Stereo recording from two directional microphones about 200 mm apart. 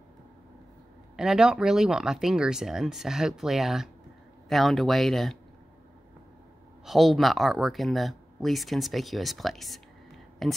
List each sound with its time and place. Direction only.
1.1 s speech: centre (ahead or behind)
6.9 s speech: centre (ahead or behind)